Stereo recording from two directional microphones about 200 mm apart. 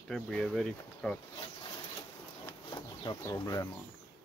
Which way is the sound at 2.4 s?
20° left (ahead or behind).